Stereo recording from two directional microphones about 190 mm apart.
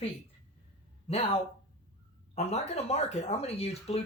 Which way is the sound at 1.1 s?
30° left (ahead or behind).